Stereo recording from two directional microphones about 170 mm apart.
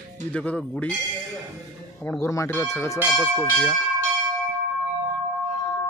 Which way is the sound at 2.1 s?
15° left (ahead or behind).